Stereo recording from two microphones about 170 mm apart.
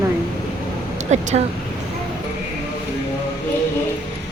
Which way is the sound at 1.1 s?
40° right (ahead or behind).